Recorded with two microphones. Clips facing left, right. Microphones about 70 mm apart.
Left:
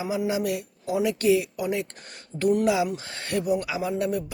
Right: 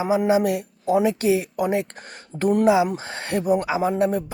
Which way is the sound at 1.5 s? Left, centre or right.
Right.